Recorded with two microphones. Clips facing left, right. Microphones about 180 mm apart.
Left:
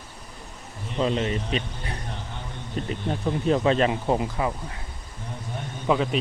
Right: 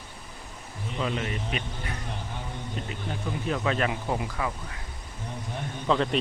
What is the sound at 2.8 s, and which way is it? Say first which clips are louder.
Speech: left 8 dB; 40° left (ahead or behind).